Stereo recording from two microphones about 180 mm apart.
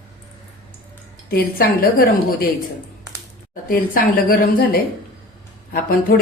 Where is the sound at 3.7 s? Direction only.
50° left (ahead or behind).